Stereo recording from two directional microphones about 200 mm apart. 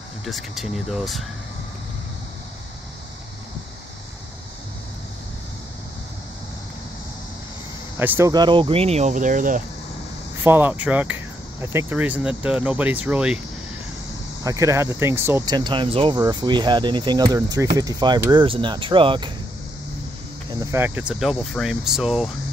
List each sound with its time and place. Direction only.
0.2 s speech: centre (ahead or behind)
8.0 s speech: 15° right (ahead or behind); by 9.6 s 40° right (ahead or behind)
10.4 s speech: 10° right (ahead or behind)
14.4 s speech: 15° right (ahead or behind)
20.7 s speech: 10° right (ahead or behind)